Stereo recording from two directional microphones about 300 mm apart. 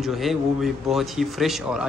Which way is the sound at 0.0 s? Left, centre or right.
Centre.